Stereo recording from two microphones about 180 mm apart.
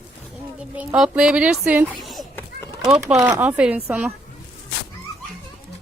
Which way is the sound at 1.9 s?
Centre (ahead or behind).